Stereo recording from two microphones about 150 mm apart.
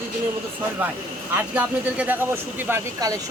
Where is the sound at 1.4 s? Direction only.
10° right (ahead or behind).